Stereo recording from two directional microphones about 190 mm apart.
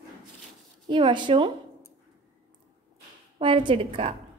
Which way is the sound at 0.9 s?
25° right (ahead or behind).